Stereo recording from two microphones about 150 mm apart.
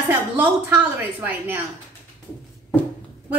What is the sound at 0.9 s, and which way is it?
Speech, 10° right (ahead or behind).